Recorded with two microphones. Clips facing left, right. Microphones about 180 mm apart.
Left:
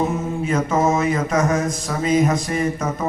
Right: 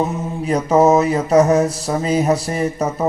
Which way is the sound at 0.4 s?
35° right (ahead or behind).